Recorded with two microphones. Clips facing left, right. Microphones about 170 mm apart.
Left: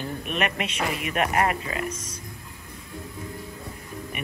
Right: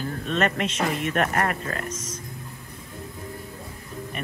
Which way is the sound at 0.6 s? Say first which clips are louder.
Right 3 dB; 5° left (ahead or behind).